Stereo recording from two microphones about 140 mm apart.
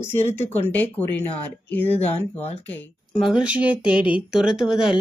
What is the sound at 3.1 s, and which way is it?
Speech, centre (ahead or behind).